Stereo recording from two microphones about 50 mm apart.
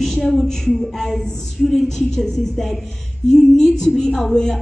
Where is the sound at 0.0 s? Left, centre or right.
Centre.